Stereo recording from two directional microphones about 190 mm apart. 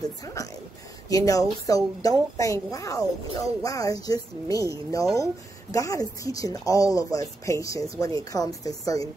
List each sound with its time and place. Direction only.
0.2 s a woman's voice: 15° left (ahead or behind)